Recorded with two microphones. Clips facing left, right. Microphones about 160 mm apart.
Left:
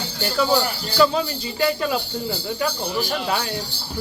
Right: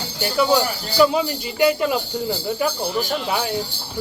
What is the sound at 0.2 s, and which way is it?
Speech, 15° right (ahead or behind).